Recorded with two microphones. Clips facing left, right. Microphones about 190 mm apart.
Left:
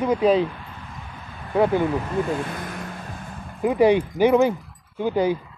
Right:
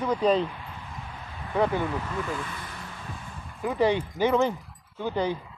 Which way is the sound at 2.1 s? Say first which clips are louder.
Left 8 dB; 40° left (ahead or behind).